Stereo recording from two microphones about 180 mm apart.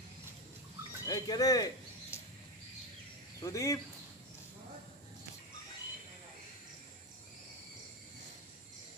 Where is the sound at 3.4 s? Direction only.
15° left (ahead or behind).